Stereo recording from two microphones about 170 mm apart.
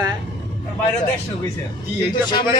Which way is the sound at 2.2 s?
25° left (ahead or behind).